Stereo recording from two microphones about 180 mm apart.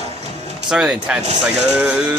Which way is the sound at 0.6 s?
5° right (ahead or behind).